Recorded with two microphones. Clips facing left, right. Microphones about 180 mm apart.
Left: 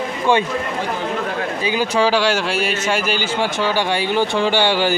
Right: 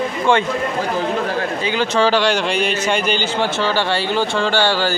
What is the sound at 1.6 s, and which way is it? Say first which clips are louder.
Speech: even; 10° left (ahead or behind).